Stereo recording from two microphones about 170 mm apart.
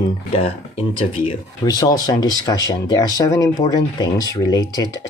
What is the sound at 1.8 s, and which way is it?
Speech, 20° left (ahead or behind).